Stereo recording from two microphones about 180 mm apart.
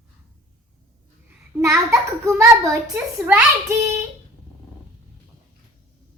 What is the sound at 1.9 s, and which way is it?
A child's voice, 15° right (ahead or behind).